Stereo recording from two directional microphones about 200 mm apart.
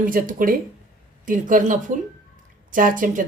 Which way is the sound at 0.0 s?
45° right (ahead or behind).